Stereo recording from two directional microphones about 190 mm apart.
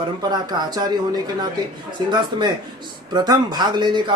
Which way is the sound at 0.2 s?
20° right (ahead or behind).